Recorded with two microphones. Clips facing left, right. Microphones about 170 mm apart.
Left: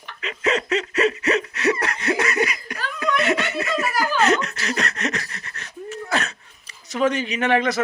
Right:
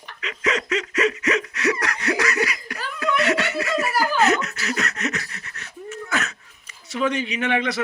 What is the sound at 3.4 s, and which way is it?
Laughter, 30° left (ahead or behind).